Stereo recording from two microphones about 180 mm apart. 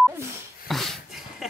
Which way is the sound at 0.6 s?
Centre (ahead or behind).